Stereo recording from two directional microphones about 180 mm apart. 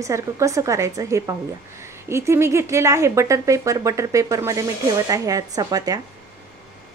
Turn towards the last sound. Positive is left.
turn(degrees=-20)  # may be behind; listen again after turning